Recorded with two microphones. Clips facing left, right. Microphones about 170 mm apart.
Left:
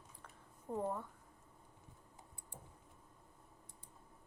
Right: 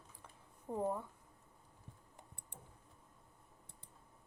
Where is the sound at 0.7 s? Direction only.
10° right (ahead or behind).